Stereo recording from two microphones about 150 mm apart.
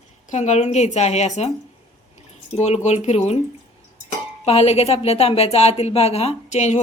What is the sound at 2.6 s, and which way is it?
Speech, 45° left (ahead or behind).